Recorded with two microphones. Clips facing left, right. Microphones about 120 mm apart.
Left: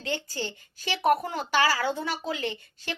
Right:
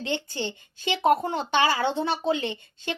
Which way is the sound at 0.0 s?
20° right (ahead or behind).